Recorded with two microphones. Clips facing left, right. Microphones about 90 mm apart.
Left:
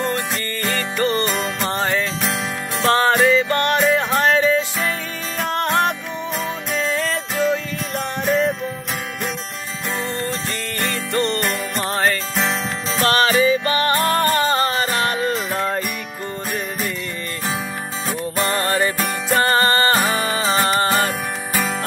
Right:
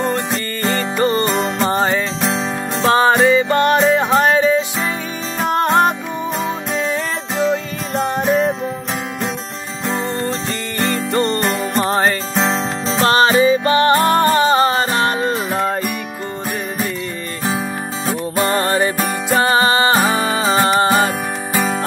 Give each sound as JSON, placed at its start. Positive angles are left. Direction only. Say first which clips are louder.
{"t": 0.6, "sound": "music", "louder": "right 4 dB", "side_deg": -20}
{"t": 10.8, "sound": "music", "louder": "right 4 dB", "side_deg": -25}
{"t": 15.5, "sound": "music", "louder": "right 3 dB", "side_deg": -15}
{"t": 18.0, "sound": "music", "louder": "right 4 dB", "side_deg": -25}
{"t": 18.9, "sound": "music", "louder": "right 3 dB", "side_deg": -5}